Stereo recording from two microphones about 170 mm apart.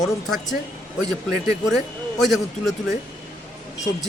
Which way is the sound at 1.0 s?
20° right (ahead or behind).